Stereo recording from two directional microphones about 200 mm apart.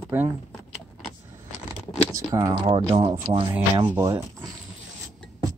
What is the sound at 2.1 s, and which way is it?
Speech, 20° right (ahead or behind).